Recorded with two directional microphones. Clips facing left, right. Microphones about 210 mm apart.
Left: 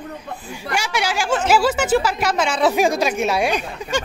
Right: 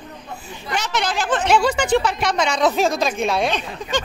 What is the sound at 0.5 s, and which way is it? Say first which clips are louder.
A woman's voice: left 1 dB; 10° left (ahead or behind).